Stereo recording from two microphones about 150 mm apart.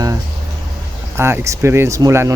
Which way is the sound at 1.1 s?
15° right (ahead or behind).